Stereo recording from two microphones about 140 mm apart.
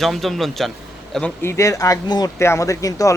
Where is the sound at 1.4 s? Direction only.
20° left (ahead or behind).